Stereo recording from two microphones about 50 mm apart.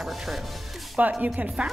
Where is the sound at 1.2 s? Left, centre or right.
Right.